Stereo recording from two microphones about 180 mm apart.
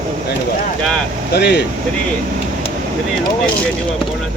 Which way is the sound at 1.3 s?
65° left (ahead or behind).